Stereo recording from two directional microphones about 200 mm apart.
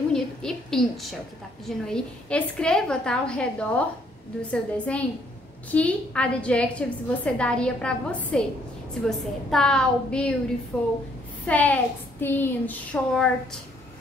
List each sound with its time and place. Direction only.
0.1 s a woman's voice: centre (ahead or behind)